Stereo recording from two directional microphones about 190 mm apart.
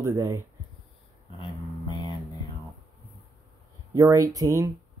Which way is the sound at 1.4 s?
25° left (ahead or behind).